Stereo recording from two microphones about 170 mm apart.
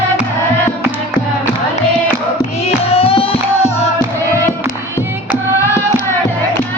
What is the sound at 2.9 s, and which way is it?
Music, 35° left (ahead or behind).